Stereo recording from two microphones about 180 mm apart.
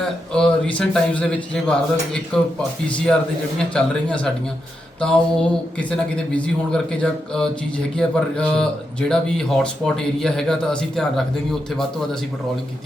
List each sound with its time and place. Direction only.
0.3 s speech: 5° left (ahead or behind)
3.6 s a man's voice: 5° left (ahead or behind)